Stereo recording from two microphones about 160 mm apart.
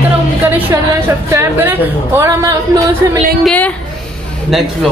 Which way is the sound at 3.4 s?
5° left (ahead or behind).